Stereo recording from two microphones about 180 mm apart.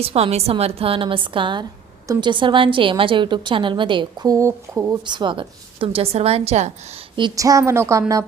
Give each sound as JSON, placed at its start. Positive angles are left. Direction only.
{"t": 0.0, "sound": "a woman's voice", "side_deg": -35}
{"t": 7.2, "sound": "a woman's voice", "side_deg": -20}